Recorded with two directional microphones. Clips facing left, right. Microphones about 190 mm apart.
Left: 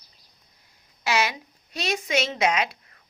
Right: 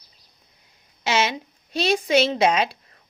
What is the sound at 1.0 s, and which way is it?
A woman's voice, 25° right (ahead or behind).